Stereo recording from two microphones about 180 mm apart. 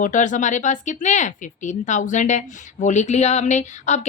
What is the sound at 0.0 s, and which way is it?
Speech, 45° left (ahead or behind).